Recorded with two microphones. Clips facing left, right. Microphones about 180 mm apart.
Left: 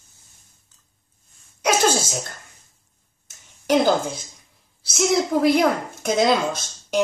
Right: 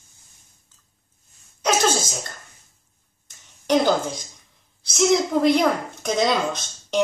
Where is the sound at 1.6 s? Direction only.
10° left (ahead or behind).